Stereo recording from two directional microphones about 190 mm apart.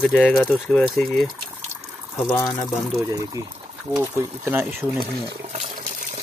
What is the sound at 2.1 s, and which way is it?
Speech, 5° left (ahead or behind).